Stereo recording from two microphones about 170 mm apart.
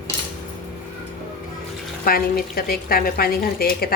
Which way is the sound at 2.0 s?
60° left (ahead or behind).